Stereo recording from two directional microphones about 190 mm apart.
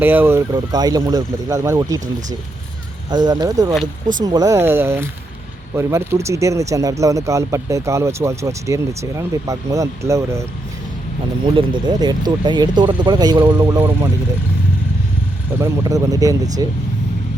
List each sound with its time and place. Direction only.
0.0 s speech: 10° right (ahead or behind)
3.1 s speech: 20° right (ahead or behind)
11.4 s speech: 25° right (ahead or behind)
15.5 s speech: 15° right (ahead or behind)